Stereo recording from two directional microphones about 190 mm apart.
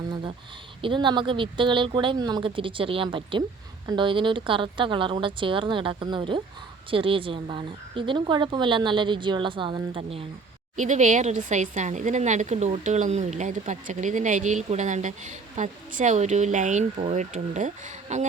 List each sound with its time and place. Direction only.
0.8 s speech: 25° right (ahead or behind)
10.8 s speech: 40° right (ahead or behind)